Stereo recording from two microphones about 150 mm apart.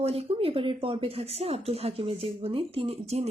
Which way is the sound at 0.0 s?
40° right (ahead or behind).